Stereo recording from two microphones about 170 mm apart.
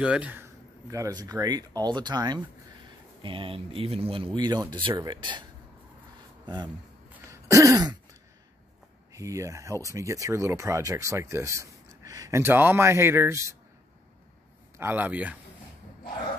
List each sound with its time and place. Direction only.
0.0 s speech: 5° right (ahead or behind); by 5.4 s 25° right (ahead or behind)
6.4 s speech: 25° right (ahead or behind)
9.1 s speech: 20° right (ahead or behind)
14.8 s speech: 10° right (ahead or behind)